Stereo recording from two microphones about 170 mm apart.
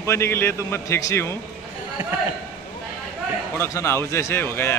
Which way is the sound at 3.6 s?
15° left (ahead or behind).